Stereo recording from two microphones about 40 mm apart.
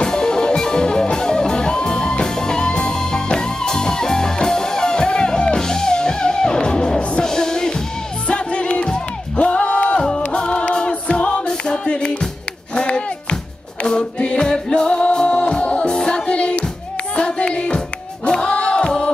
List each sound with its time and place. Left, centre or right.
0.0 s music: centre
8.3 s music: left
11.4 s music: left
12.7 s a sound: left
13.8 s music: left